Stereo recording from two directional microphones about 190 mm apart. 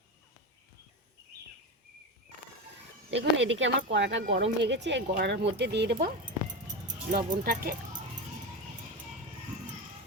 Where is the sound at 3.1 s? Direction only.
75° right (ahead or behind).